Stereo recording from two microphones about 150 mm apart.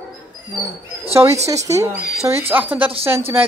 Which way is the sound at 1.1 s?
20° right (ahead or behind).